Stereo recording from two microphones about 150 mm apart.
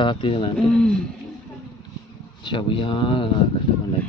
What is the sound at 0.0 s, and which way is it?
Speech, 35° left (ahead or behind).